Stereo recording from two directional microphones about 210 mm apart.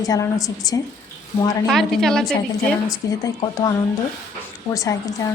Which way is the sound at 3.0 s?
15° left (ahead or behind).